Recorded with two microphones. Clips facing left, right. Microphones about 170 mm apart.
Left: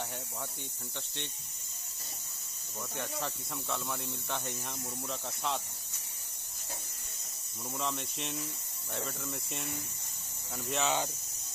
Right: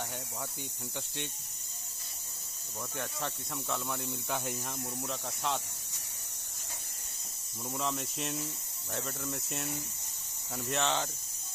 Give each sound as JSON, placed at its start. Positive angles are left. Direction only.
{"t": 3.0, "sound": "speech", "side_deg": 0}
{"t": 7.7, "sound": "speech", "side_deg": 0}